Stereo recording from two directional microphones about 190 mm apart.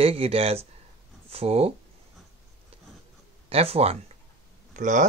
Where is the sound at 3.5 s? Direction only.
30° right (ahead or behind).